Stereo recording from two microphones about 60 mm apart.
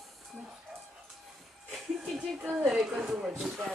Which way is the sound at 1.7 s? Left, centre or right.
Centre.